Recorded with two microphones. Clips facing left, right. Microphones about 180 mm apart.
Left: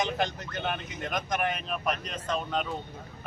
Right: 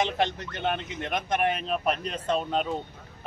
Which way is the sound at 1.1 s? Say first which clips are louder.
Right 4 dB; 30° right (ahead or behind).